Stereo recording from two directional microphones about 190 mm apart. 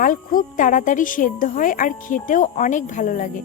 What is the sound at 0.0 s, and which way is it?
Speech, 45° left (ahead or behind).